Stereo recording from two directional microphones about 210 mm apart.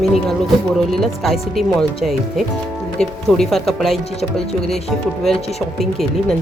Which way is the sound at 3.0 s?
Centre (ahead or behind).